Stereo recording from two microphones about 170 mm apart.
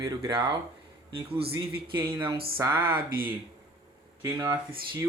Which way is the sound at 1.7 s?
30° right (ahead or behind).